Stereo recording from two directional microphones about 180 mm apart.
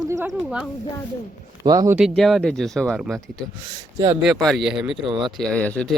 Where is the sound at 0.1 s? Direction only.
15° right (ahead or behind).